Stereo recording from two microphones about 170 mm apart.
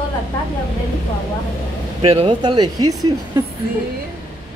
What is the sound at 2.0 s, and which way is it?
Speech, 30° right (ahead or behind).